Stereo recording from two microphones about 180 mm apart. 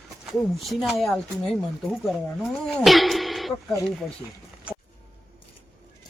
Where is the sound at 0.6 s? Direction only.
Centre (ahead or behind).